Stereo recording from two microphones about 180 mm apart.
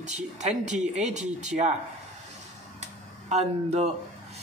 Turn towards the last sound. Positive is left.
turn(degrees=-40)  # may be behind; listen again after turning